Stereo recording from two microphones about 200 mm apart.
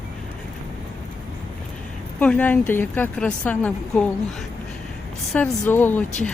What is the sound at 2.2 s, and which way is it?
A woman's voice, 10° left (ahead or behind).